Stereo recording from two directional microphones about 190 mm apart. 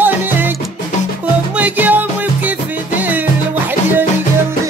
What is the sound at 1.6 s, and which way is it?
Music, 10° right (ahead or behind).